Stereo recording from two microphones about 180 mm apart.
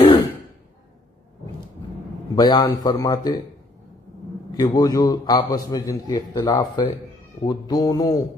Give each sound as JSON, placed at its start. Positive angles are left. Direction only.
{"t": 2.3, "sound": "a man's voice", "side_deg": 25}
{"t": 4.5, "sound": "a man's voice", "side_deg": 20}